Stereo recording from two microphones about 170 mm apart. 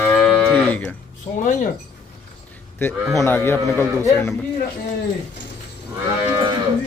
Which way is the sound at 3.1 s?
15° left (ahead or behind).